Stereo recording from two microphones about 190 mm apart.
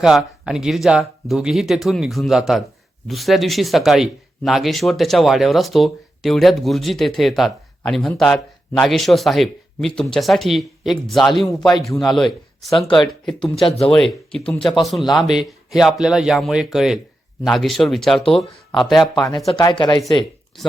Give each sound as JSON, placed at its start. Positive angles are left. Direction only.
{"t": 0.0, "sound": "speech", "side_deg": 0}
{"t": 19.5, "sound": "speech", "side_deg": 25}